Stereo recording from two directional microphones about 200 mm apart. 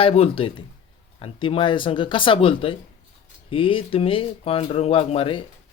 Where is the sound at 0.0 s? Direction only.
30° left (ahead or behind).